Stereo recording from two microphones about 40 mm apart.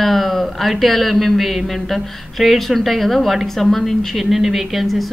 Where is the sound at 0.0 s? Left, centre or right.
Centre.